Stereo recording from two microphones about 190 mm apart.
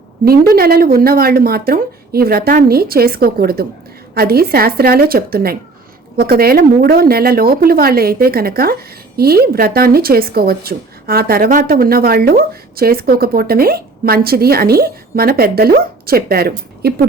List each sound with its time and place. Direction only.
0.3 s a woman's voice: 55° right (ahead or behind)